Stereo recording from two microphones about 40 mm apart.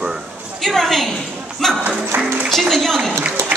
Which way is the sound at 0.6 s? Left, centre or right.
Centre.